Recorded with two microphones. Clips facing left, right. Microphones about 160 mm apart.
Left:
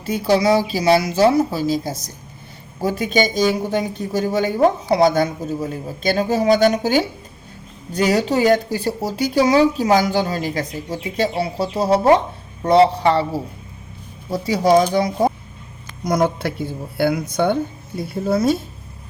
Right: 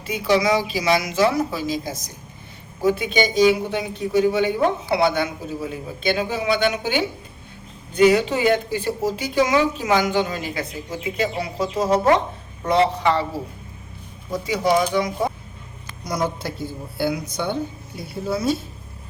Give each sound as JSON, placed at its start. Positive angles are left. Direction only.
{"t": 0.0, "sound": "speech", "side_deg": 35}
{"t": 14.3, "sound": "speech", "side_deg": 35}
{"t": 16.0, "sound": "a woman's voice", "side_deg": 55}